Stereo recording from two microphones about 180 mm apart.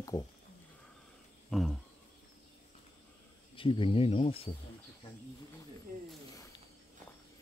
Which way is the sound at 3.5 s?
30° left (ahead or behind).